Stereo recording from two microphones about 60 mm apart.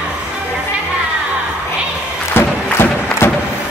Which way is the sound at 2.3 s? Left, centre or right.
Left.